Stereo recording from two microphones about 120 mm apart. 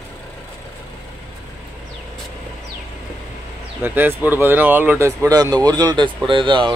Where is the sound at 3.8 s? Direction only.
15° right (ahead or behind).